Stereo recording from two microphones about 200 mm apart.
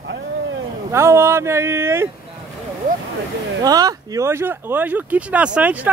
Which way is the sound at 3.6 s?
20° right (ahead or behind).